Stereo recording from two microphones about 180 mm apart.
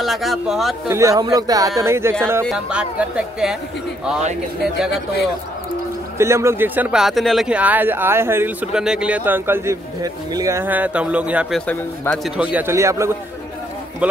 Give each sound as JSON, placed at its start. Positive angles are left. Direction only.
{"t": 0.0, "sound": "a woman's voice", "side_deg": 0}
{"t": 0.8, "sound": "a woman's voice", "side_deg": -15}
{"t": 6.1, "sound": "speech", "side_deg": -15}
{"t": 11.6, "sound": "speech", "side_deg": 10}
{"t": 12.5, "sound": "speech", "side_deg": -15}